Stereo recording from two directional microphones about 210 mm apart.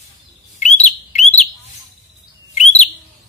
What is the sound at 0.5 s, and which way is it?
Chirp, 35° left (ahead or behind).